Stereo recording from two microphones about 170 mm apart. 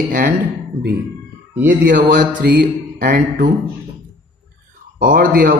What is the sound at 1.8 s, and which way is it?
Speech, 55° right (ahead or behind).